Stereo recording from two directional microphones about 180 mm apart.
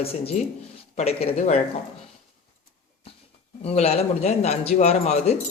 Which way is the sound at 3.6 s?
35° left (ahead or behind).